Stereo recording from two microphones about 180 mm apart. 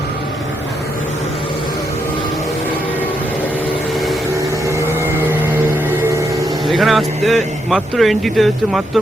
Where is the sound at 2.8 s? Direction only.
10° left (ahead or behind).